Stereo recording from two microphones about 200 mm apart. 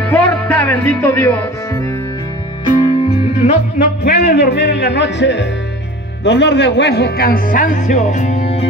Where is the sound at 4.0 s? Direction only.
50° left (ahead or behind).